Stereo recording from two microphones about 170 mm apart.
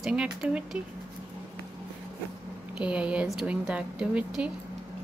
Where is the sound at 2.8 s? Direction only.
5° right (ahead or behind).